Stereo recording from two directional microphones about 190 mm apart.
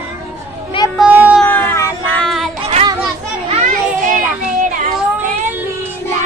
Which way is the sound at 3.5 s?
40° right (ahead or behind).